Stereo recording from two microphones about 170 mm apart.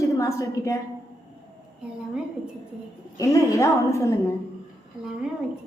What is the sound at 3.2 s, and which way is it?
Speech, 20° left (ahead or behind).